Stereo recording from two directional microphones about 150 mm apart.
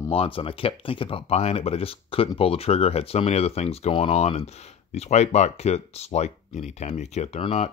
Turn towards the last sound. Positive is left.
turn(degrees=45)  # may be behind; listen again after turning